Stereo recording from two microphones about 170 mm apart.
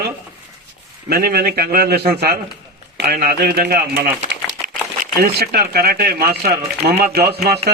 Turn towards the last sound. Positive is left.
turn(degrees=-70)  # may be behind; listen again after turning